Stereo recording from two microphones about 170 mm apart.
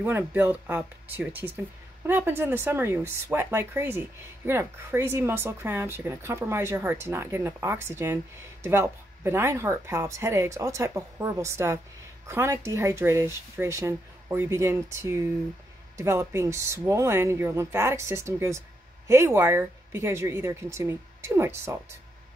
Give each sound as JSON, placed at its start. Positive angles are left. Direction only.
{"t": 0.0, "sound": "speech", "side_deg": -10}